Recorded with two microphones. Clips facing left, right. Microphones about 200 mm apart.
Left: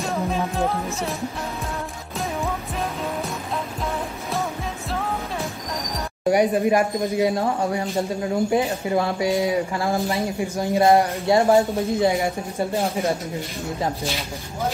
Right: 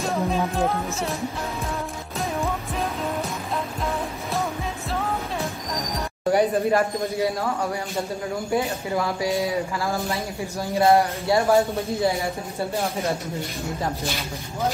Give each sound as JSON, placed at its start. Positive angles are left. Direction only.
{"t": 0.0, "sound": "music", "side_deg": 0}
{"t": 6.3, "sound": "speech", "side_deg": 15}